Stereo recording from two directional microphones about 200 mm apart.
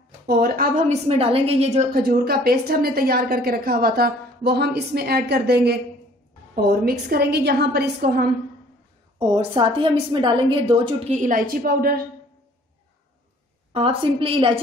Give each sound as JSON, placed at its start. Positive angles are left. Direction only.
{"t": 0.3, "sound": "a sound", "side_deg": -45}
{"t": 1.0, "sound": "a woman's voice", "side_deg": -30}
{"t": 2.0, "sound": "a woman's voice", "side_deg": -50}
{"t": 9.3, "sound": "a woman's voice", "side_deg": -25}
{"t": 13.7, "sound": "a woman's voice", "side_deg": -25}